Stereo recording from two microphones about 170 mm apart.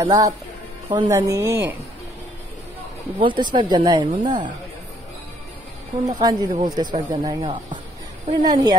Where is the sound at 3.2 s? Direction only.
25° right (ahead or behind).